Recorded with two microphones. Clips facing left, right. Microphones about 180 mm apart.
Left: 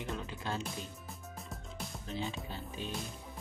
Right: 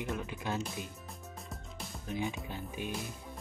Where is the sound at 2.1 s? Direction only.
15° right (ahead or behind).